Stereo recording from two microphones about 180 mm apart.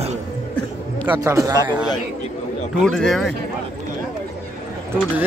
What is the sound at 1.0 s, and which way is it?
Speech, 15° right (ahead or behind).